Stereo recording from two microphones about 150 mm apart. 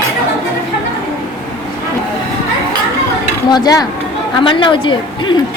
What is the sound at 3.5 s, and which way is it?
A woman's voice, 25° left (ahead or behind).